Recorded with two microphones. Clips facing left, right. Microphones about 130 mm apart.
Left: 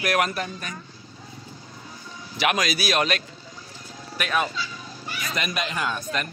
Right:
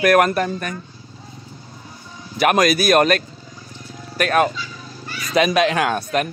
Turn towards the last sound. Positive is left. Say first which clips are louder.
# right 8 dB
turn(degrees=-65)  # may be behind; listen again after turning